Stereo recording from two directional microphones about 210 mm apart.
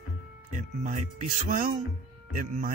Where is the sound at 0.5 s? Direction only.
35° right (ahead or behind).